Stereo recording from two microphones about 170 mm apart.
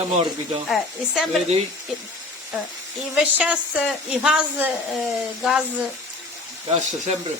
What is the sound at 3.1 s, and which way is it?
Speech, 5° right (ahead or behind).